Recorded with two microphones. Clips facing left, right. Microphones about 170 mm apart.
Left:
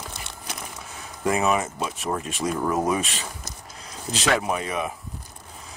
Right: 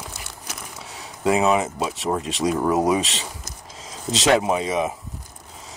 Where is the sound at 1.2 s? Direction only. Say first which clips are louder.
Right 4 dB; 20° right (ahead or behind).